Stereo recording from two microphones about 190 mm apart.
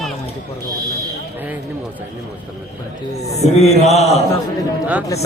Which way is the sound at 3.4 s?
35° left (ahead or behind).